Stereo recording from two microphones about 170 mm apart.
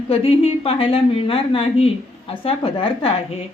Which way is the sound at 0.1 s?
35° left (ahead or behind).